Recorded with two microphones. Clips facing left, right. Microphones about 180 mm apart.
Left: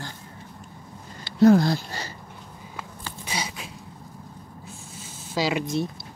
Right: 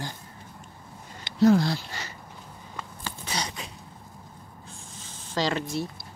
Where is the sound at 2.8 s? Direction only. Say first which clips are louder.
Even; 10° left (ahead or behind).